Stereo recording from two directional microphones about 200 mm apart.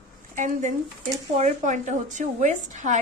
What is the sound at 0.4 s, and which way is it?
A woman's voice, 40° right (ahead or behind).